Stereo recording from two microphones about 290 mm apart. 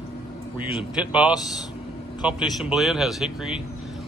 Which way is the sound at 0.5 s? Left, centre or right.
Centre.